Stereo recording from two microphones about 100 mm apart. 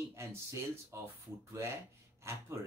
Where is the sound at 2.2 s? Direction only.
25° right (ahead or behind).